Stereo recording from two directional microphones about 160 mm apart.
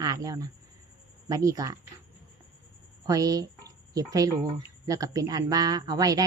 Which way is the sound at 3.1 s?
20° right (ahead or behind).